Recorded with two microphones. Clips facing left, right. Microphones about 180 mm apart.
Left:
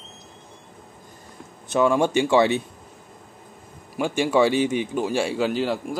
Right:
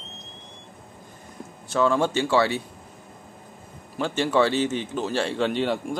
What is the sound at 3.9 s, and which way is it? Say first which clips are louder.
Speech: left 2 dB; 10° left (ahead or behind).